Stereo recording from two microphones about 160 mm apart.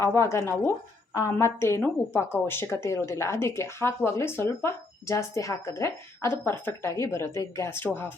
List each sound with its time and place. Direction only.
0.0 s a woman's voice: 20° left (ahead or behind)